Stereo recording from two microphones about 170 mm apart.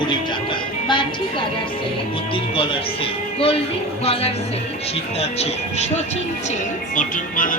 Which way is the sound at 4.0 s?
35° left (ahead or behind).